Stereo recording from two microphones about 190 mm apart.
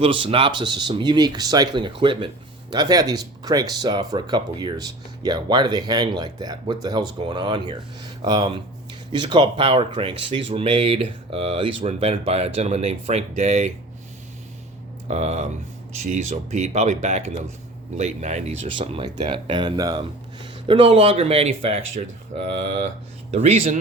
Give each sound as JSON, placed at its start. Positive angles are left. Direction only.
{"t": 0.0, "sound": "speech", "side_deg": -30}
{"t": 15.0, "sound": "speech", "side_deg": -35}